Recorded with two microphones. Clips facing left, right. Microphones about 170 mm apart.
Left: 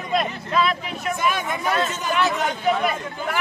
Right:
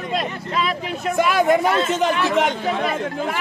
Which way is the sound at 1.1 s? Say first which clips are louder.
Right 9 dB; 85° right.